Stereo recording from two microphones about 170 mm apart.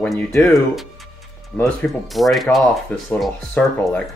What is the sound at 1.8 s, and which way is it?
Speech, centre (ahead or behind).